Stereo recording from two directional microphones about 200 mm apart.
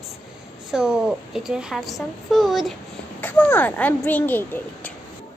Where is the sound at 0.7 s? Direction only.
5° right (ahead or behind).